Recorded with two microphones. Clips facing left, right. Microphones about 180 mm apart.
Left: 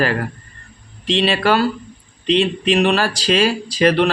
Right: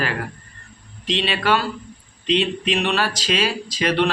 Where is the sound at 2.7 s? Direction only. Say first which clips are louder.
Left 7 dB; 40° left (ahead or behind).